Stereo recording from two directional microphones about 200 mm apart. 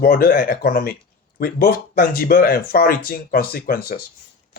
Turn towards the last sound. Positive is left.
turn(degrees=50)  # may be behind; listen again after turning